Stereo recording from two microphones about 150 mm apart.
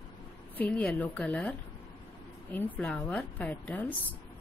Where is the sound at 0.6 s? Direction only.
10° left (ahead or behind).